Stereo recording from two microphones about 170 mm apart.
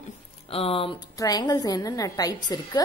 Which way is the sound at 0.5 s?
35° left (ahead or behind).